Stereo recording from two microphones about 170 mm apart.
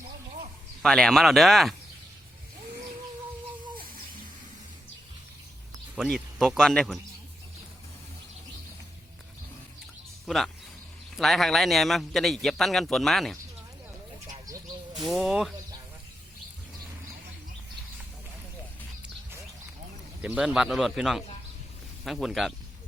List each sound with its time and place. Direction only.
0.8 s a man's voice: 5° left (ahead or behind)
6.0 s a man's voice: centre (ahead or behind)
10.2 s a man's voice: centre (ahead or behind)
14.3 s bird: 20° right (ahead or behind)
14.9 s a man's voice: centre (ahead or behind)
20.2 s a man's voice: 5° right (ahead or behind)